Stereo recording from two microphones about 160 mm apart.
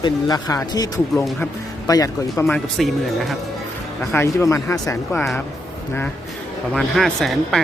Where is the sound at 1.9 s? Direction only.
20° left (ahead or behind).